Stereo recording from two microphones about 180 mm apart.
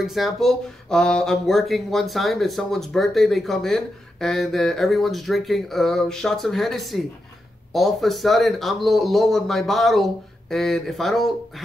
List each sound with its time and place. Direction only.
0.0 s speech: centre (ahead or behind)